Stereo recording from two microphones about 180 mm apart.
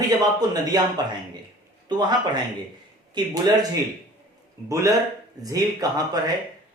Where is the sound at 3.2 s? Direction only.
25° right (ahead or behind).